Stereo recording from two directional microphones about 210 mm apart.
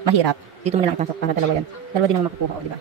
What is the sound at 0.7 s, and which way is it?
Speech, 30° right (ahead or behind).